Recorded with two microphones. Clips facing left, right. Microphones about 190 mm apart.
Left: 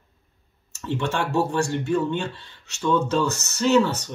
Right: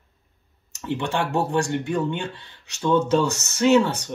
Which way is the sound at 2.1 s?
60° right (ahead or behind).